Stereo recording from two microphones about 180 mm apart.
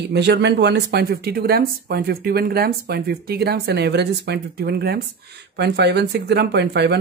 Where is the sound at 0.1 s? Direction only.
70° right (ahead or behind).